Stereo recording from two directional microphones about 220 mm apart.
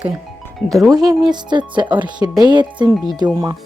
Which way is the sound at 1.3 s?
20° right (ahead or behind).